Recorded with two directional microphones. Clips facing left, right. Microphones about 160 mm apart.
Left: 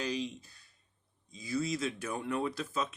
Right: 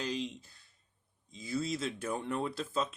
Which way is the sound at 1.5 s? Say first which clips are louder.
Left 1 dB; 25° right (ahead or behind).